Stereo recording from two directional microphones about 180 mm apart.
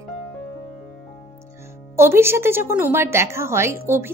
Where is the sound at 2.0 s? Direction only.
15° right (ahead or behind).